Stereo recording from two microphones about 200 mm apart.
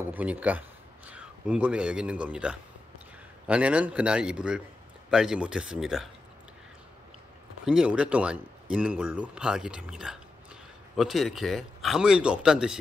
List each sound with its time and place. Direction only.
0.0 s a man's voice: 10° right (ahead or behind)
7.6 s speech: 5° right (ahead or behind)